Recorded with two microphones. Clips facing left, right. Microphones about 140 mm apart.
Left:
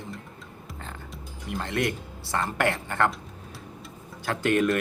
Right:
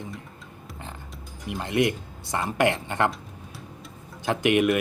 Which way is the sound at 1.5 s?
20° right (ahead or behind).